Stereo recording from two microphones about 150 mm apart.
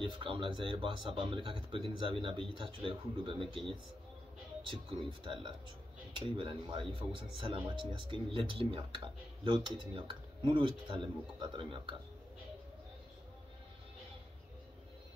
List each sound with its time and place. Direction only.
0.0 s speech: 35° right (ahead or behind)
5.2 s speech: 35° right (ahead or behind)